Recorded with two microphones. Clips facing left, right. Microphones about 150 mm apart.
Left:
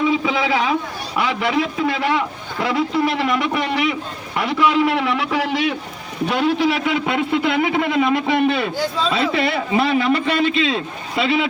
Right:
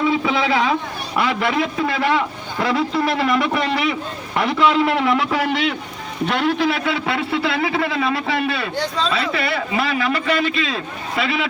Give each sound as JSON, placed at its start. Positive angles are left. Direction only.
{"t": 0.0, "sound": "a man's voice", "side_deg": 15}
{"t": 8.7, "sound": "speech", "side_deg": 5}
{"t": 9.1, "sound": "a man's voice", "side_deg": 25}